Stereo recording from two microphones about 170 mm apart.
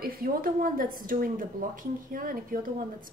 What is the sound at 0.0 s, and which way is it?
Speech, 60° right (ahead or behind).